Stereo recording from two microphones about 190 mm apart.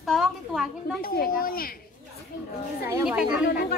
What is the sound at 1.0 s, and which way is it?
Speech, 50° left (ahead or behind).